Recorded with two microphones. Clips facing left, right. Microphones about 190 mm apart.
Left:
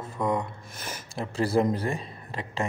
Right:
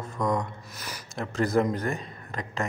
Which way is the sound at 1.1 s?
30° left (ahead or behind).